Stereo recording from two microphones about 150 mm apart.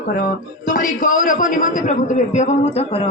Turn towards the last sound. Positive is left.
turn(degrees=40)  # may be behind; listen again after turning